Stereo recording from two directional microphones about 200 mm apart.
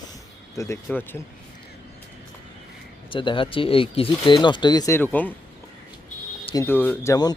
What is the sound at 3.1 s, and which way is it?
Speech, 25° left (ahead or behind).